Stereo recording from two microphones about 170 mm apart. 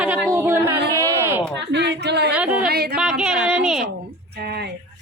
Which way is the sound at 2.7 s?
65° right (ahead or behind).